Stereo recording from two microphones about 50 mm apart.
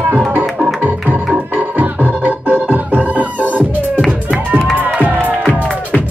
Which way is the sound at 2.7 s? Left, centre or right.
Right.